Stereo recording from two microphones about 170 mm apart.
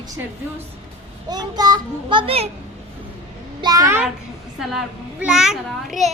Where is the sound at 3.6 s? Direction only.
20° right (ahead or behind).